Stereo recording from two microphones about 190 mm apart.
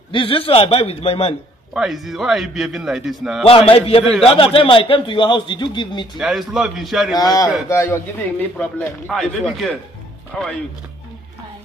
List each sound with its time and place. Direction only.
0.1 s a man's voice: 30° left (ahead or behind)
1.7 s a man's voice: centre (ahead or behind)
3.4 s a man's voice: 30° left (ahead or behind)
6.1 s a man's voice: centre (ahead or behind)
7.2 s a man's voice: 20° left (ahead or behind)